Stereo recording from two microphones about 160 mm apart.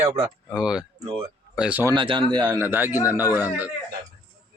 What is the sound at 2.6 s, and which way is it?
Speech, 15° right (ahead or behind).